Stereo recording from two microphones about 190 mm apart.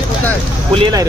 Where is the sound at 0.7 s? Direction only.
25° right (ahead or behind).